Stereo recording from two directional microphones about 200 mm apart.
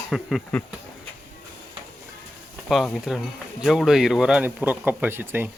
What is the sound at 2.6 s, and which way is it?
Speech, centre (ahead or behind).